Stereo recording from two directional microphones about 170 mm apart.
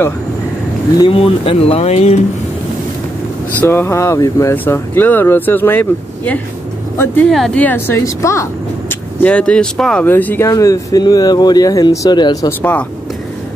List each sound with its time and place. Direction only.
0.9 s speech: 30° left (ahead or behind)
3.6 s speech: 15° left (ahead or behind)
9.2 s speech: 5° left (ahead or behind); by 12.5 s 20° left (ahead or behind)